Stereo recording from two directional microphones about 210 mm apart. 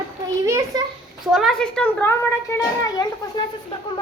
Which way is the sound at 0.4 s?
15° right (ahead or behind).